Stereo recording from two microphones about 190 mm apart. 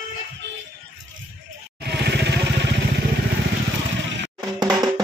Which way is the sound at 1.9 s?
60° right (ahead or behind).